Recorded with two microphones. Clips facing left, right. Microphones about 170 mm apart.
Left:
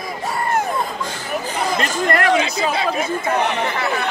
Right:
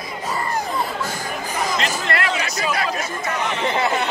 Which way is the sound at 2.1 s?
50° left (ahead or behind).